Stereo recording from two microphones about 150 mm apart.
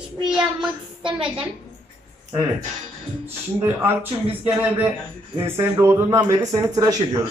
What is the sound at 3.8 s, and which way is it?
A man's voice, 15° right (ahead or behind).